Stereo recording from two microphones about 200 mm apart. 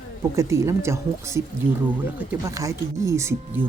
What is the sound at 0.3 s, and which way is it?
A woman's voice, 15° right (ahead or behind).